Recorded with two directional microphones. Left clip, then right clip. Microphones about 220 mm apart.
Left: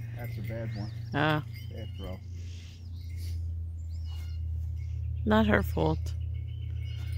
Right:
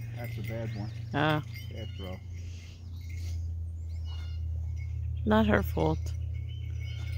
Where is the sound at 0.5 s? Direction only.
45° left (ahead or behind).